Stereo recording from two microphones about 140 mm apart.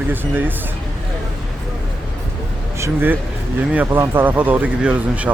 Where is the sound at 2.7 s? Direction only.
15° right (ahead or behind).